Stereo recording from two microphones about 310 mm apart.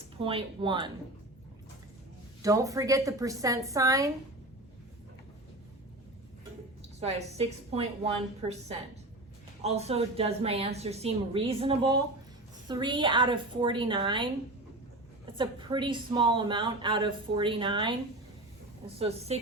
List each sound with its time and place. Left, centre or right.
0.2 s a woman's voice: centre
2.4 s a woman's voice: centre
7.0 s a woman's voice: centre
15.4 s a woman's voice: centre
18.9 s a woman's voice: centre